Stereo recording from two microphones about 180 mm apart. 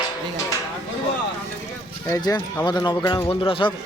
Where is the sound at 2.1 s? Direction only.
20° left (ahead or behind).